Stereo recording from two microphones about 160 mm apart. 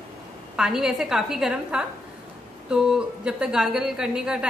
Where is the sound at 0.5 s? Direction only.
5° right (ahead or behind).